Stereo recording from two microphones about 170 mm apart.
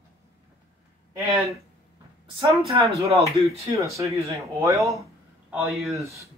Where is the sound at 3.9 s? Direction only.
20° right (ahead or behind).